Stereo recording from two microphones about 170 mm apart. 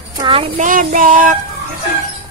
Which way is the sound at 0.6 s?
50° right (ahead or behind).